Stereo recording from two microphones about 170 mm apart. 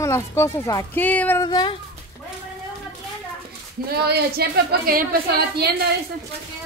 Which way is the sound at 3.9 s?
70° right (ahead or behind).